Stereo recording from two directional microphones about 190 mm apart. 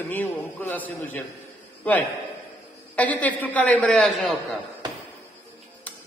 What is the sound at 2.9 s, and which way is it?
A woman's voice, 10° left (ahead or behind).